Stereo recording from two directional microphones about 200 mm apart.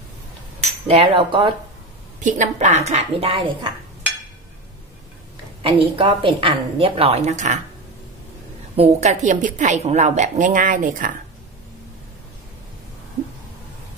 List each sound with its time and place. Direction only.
0.8 s a woman's voice: 30° right (ahead or behind)
2.1 s a woman's voice: 40° right (ahead or behind)
5.6 s a woman's voice: 25° right (ahead or behind)
8.7 s a woman's voice: 35° right (ahead or behind)